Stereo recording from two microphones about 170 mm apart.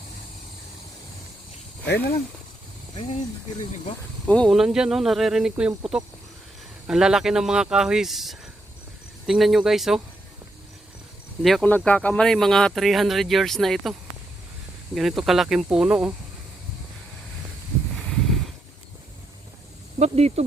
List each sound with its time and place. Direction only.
1.8 s speech: 75° left (ahead or behind)
4.3 s speech: 5° left (ahead or behind)
11.4 s speech: 5° left (ahead or behind)
14.9 s speech: centre (ahead or behind)
20.0 s speech: 40° right (ahead or behind)